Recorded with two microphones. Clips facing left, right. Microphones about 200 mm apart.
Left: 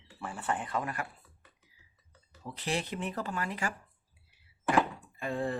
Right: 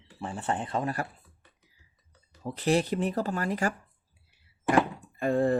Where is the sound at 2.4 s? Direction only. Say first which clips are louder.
Right 9 dB; 45° right (ahead or behind).